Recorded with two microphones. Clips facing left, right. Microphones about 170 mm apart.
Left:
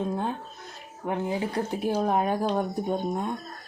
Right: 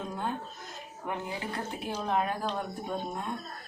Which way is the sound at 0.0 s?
25° left (ahead or behind).